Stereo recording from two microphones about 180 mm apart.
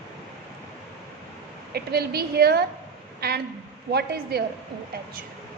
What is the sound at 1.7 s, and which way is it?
A woman's voice, 60° right (ahead or behind).